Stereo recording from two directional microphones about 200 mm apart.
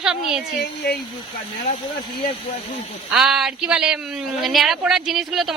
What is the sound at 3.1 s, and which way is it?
A woman's voice, 5° right (ahead or behind).